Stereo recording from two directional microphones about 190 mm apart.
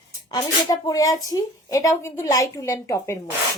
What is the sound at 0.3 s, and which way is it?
Speech, 20° left (ahead or behind).